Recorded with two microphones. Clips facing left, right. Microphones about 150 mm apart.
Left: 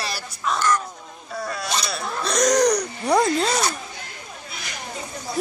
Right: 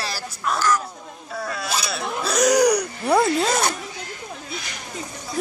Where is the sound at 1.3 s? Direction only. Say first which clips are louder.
Even; centre (ahead or behind).